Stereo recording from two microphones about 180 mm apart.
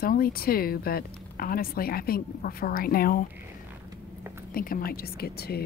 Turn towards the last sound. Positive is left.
turn(degrees=60)  # may be behind; listen again after turning